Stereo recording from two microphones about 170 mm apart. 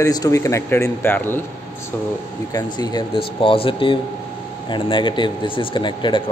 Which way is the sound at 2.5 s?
25° left (ahead or behind).